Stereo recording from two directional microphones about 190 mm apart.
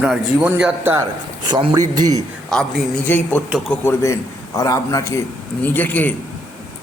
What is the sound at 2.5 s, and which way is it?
A man's voice, centre (ahead or behind).